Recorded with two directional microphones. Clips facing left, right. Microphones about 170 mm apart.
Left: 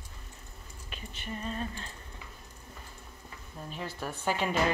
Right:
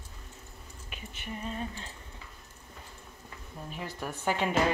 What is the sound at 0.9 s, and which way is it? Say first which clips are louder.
A woman's voice: left 1 dB; 15° right (ahead or behind).